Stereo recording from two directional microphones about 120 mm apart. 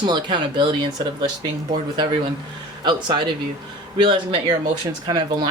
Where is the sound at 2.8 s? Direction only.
40° right (ahead or behind).